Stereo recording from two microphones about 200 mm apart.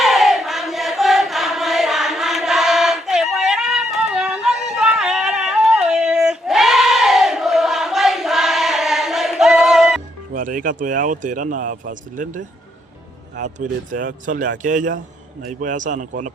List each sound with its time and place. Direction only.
0.0 s chant: centre (ahead or behind)
10.3 s speech: 40° right (ahead or behind)